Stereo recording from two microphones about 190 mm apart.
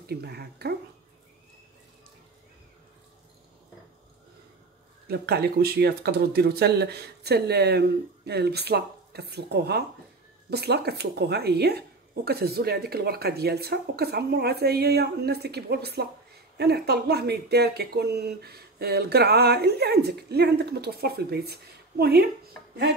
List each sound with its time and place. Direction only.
0.0 s speech: 55° right (ahead or behind)
5.0 s speech: 55° right (ahead or behind)